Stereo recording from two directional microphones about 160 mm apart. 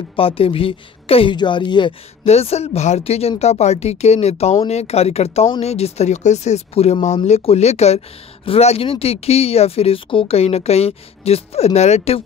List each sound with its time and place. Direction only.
0.1 s speech: 35° left (ahead or behind)
2.2 s speech: 40° left (ahead or behind)